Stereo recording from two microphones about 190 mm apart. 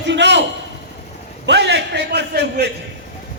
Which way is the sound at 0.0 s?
65° right (ahead or behind).